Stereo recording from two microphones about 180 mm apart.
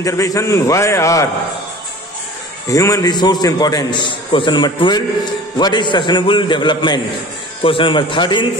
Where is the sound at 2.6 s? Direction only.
20° left (ahead or behind).